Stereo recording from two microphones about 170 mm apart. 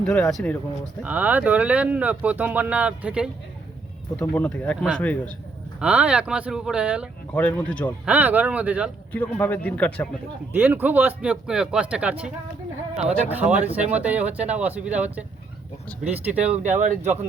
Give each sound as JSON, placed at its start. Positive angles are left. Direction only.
{"t": 0.0, "sound": "speech", "side_deg": 5}
{"t": 1.0, "sound": "speech", "side_deg": -10}
{"t": 4.2, "sound": "speech", "side_deg": 10}
{"t": 5.8, "sound": "speech", "side_deg": -5}
{"t": 7.3, "sound": "speech", "side_deg": 10}
{"t": 8.0, "sound": "speech", "side_deg": -10}
{"t": 9.1, "sound": "speech", "side_deg": 10}
{"t": 10.5, "sound": "speech", "side_deg": -10}
{"t": 16.6, "sound": "speech", "side_deg": -45}